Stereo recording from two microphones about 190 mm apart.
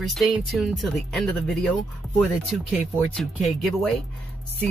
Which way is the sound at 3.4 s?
Centre (ahead or behind).